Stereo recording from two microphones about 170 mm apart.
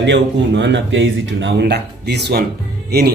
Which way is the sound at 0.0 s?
90° right.